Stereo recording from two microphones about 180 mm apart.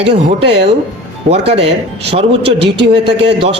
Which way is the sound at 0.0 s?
30° right (ahead or behind).